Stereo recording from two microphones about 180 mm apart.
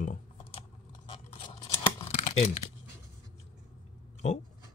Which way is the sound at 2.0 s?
35° left (ahead or behind).